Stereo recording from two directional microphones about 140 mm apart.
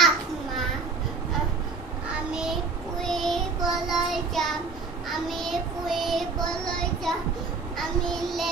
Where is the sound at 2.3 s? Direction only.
5° right (ahead or behind).